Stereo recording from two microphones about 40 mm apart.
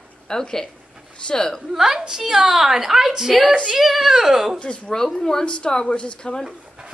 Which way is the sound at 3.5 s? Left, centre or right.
Right.